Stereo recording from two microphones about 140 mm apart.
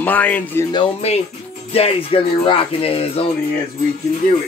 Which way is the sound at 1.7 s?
45° left (ahead or behind).